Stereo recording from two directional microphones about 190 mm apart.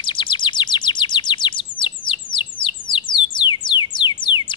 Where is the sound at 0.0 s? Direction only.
25° left (ahead or behind).